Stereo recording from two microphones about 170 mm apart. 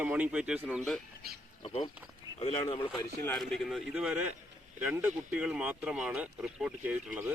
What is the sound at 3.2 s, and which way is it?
Speech, 5° left (ahead or behind).